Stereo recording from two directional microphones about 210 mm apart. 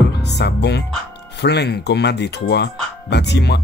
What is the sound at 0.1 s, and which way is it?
Music, 50° left (ahead or behind).